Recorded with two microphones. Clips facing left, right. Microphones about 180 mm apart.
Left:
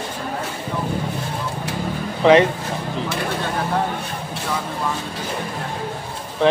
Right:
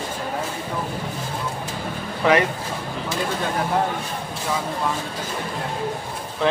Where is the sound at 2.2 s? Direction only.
20° left (ahead or behind).